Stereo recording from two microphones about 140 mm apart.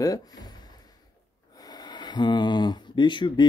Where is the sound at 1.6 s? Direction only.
30° left (ahead or behind).